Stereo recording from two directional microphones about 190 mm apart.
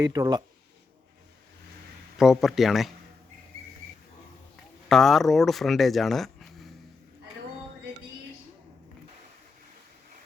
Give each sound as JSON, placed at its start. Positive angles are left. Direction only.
{"t": 0.0, "sound": "speech", "side_deg": -20}
{"t": 2.1, "sound": "speech", "side_deg": 0}
{"t": 4.9, "sound": "speech", "side_deg": 0}